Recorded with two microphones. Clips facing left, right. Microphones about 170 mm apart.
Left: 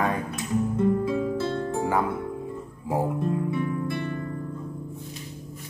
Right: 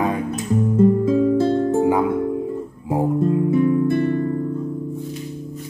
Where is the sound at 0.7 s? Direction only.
45° right (ahead or behind).